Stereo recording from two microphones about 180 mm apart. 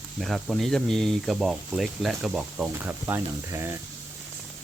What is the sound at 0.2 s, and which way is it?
Speech, centre (ahead or behind).